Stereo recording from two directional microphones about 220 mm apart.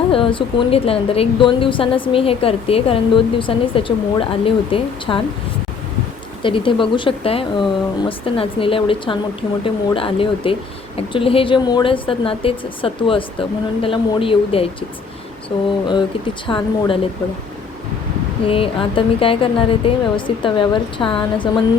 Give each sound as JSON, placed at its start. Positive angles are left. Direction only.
{"t": 0.1, "sound": "a woman's voice", "side_deg": 25}
{"t": 6.4, "sound": "a woman's voice", "side_deg": 25}
{"t": 18.4, "sound": "a woman's voice", "side_deg": 25}